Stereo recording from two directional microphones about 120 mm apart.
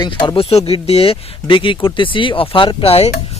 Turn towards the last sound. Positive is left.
turn(degrees=55)  # may be behind; listen again after turning